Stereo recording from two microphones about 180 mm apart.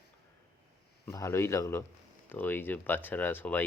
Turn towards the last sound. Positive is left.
turn(degrees=10)  # may be behind; listen again after turning